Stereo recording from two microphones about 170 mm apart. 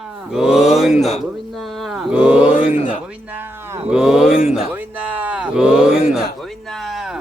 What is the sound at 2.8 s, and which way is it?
Speech, 45° left (ahead or behind).